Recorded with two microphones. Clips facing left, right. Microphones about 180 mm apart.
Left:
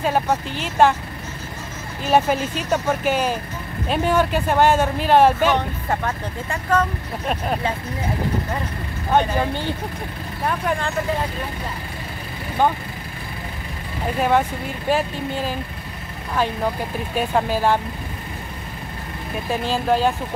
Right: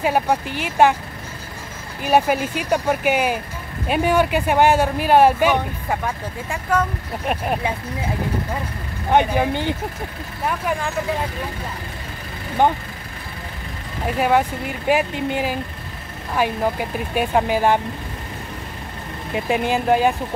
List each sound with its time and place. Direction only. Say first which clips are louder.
0.0 s speech: right 1 dB; 10° right (ahead or behind)
2.0 s speech: right 1 dB; 10° right (ahead or behind)
9.1 s speech: right 2 dB; 15° right (ahead or behind)
14.9 s speech: right 2 dB; 15° right (ahead or behind)
19.3 s speech: right 3 dB; 15° right (ahead or behind)